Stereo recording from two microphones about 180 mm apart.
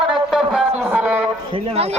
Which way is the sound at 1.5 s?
35° right (ahead or behind).